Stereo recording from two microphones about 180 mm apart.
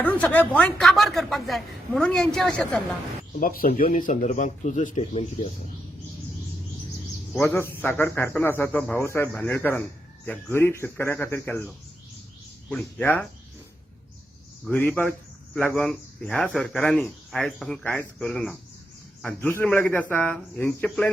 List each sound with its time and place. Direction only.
0.0 s speech: 10° left (ahead or behind)
3.4 s speech: 50° left (ahead or behind)
7.3 s a man's voice: 10° left (ahead or behind)
14.6 s a man's voice: 10° left (ahead or behind)